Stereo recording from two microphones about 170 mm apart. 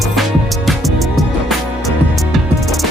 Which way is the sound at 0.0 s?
Centre (ahead or behind).